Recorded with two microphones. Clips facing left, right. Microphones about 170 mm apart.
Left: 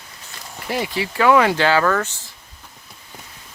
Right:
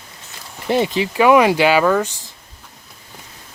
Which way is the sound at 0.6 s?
25° right (ahead or behind).